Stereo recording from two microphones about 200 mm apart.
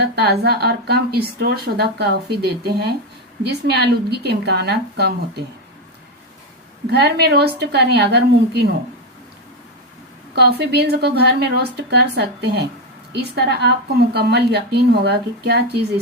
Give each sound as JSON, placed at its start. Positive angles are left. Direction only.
{"t": 0.0, "sound": "speech", "side_deg": -55}
{"t": 6.9, "sound": "speech", "side_deg": -55}
{"t": 10.3, "sound": "speech", "side_deg": -55}